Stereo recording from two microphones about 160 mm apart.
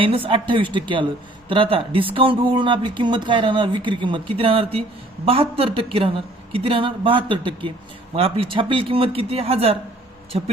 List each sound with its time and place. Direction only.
0.3 s speech: 30° right (ahead or behind)